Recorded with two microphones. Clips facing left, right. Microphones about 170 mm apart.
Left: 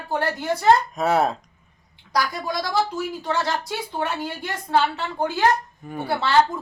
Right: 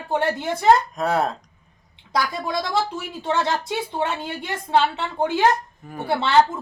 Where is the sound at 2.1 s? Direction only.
25° right (ahead or behind).